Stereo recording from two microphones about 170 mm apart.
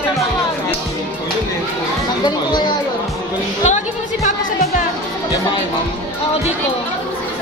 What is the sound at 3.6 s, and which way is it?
Music, 45° left (ahead or behind).